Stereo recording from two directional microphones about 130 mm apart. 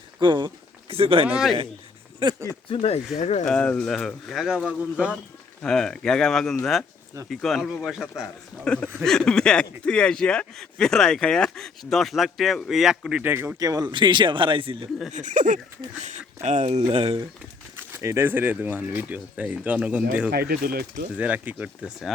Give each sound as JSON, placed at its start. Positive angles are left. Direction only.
{"t": 0.2, "sound": "speech", "side_deg": -35}
{"t": 1.3, "sound": "speech", "side_deg": -5}
{"t": 2.1, "sound": "speech", "side_deg": -35}
{"t": 2.6, "sound": "speech", "side_deg": 45}
{"t": 3.2, "sound": "speech", "side_deg": 60}
{"t": 3.4, "sound": "speech", "side_deg": 5}
{"t": 5.6, "sound": "speech", "side_deg": 5}
{"t": 13.3, "sound": "speech", "side_deg": -20}
{"t": 15.1, "sound": "speech", "side_deg": -70}
{"t": 16.9, "sound": "speech", "side_deg": -50}
{"t": 17.7, "sound": "speech", "side_deg": -20}